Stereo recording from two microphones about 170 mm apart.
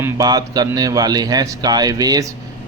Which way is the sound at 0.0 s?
20° right (ahead or behind).